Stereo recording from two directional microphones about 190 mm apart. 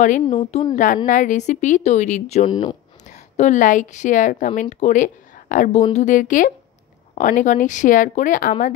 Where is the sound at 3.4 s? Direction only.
40° left (ahead or behind).